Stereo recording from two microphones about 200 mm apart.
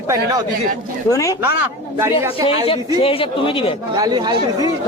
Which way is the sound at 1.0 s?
15° left (ahead or behind).